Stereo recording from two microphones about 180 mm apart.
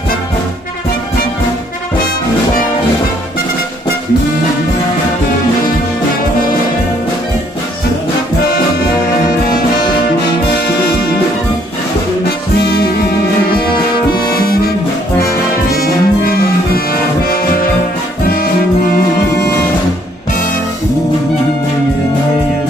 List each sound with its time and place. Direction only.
14.3 s music: 60° left (ahead or behind)
15.7 s music: 55° left (ahead or behind)